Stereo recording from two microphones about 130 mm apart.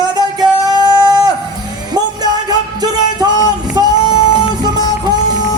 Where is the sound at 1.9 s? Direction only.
30° right (ahead or behind).